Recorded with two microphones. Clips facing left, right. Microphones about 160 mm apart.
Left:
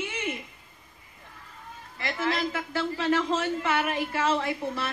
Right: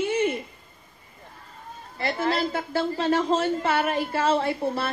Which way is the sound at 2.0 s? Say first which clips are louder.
Right 4 dB; 35° right (ahead or behind).